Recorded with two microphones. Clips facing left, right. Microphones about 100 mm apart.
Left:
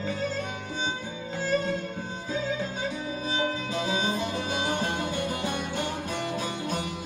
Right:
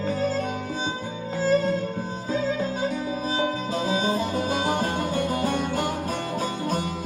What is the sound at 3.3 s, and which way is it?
Music, 40° right (ahead or behind).